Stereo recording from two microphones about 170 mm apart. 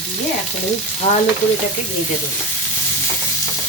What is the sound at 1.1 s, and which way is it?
Stir, 45° left (ahead or behind).